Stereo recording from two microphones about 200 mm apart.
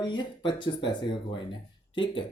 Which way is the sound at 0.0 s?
20° left (ahead or behind).